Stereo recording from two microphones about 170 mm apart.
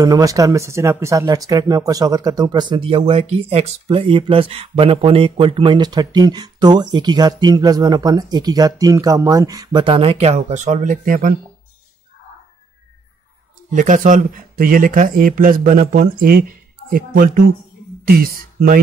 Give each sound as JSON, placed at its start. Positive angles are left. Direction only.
{"t": 0.0, "sound": "speech", "side_deg": -20}
{"t": 13.7, "sound": "speech", "side_deg": -50}